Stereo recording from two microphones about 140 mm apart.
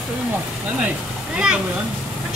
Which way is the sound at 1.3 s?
5° right (ahead or behind).